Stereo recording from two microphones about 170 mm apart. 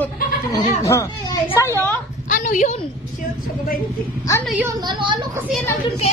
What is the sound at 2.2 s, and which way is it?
Speech, 50° left (ahead or behind).